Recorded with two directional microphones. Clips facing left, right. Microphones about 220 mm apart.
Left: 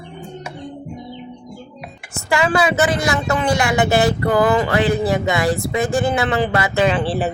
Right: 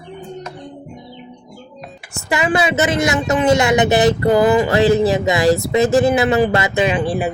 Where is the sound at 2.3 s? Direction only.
20° right (ahead or behind).